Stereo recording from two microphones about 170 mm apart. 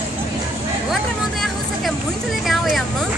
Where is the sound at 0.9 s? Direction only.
Centre (ahead or behind).